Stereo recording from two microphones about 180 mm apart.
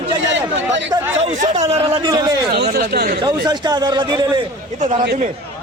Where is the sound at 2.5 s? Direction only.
60° right (ahead or behind).